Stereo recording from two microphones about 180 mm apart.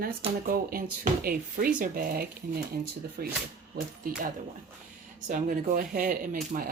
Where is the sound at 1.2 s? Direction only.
55° right (ahead or behind).